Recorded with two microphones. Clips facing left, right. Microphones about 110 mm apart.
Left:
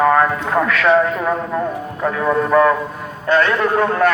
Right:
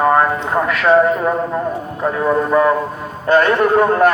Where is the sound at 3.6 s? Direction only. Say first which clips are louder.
Right 4 dB; 15° right (ahead or behind).